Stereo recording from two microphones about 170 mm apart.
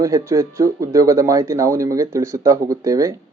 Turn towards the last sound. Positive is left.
turn(degrees=-20)  # may be behind; listen again after turning